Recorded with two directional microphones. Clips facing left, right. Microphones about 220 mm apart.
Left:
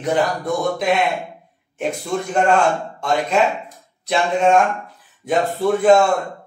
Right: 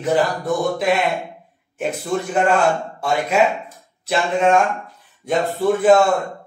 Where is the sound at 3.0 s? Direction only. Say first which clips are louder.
Even; 10° right (ahead or behind).